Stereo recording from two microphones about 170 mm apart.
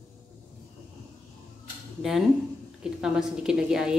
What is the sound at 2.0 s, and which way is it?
A woman's voice, centre (ahead or behind).